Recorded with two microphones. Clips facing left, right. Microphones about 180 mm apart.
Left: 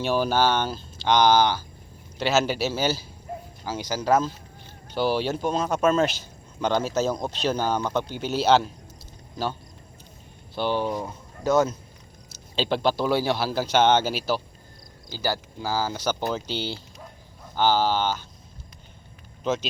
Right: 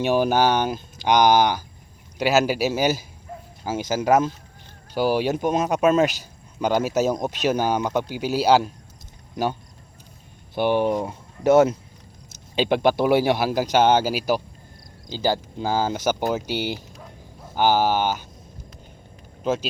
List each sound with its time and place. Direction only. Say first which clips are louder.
0.0 s speech: right 3 dB; 15° right (ahead or behind)
12.3 s a sound: right 4 dB; 15° right (ahead or behind)
13.0 s speech: right 5 dB; 20° right (ahead or behind)
19.4 s speech: right 2 dB; 10° right (ahead or behind)